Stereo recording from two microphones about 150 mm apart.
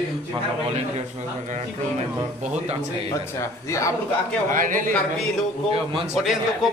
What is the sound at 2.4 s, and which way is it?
Speech, 50° right (ahead or behind).